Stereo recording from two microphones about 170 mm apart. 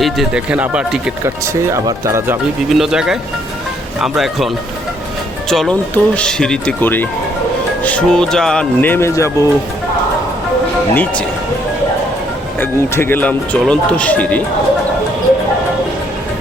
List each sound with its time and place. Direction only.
0.0 s speech: 5° right (ahead or behind)
1.7 s speech: 15° right (ahead or behind)
2.6 s speech: centre (ahead or behind); by 9.5 s 20° left (ahead or behind)
10.9 s speech: 10° left (ahead or behind)
12.5 s speech: 15° left (ahead or behind)